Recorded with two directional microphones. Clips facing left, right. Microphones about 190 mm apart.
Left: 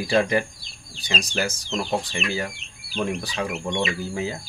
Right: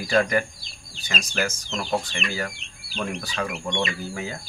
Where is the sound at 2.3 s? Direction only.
20° left (ahead or behind).